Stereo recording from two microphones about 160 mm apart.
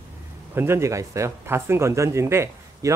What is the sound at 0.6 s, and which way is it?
Speech, 15° right (ahead or behind).